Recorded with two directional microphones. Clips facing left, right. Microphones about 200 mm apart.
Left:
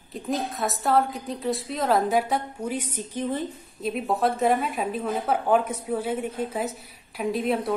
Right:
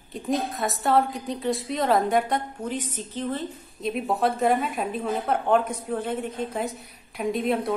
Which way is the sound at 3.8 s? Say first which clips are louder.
Even; centre (ahead or behind).